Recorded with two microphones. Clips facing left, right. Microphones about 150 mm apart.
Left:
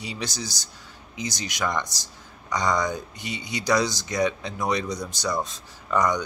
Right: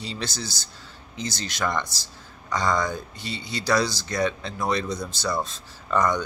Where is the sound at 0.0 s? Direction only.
15° left (ahead or behind).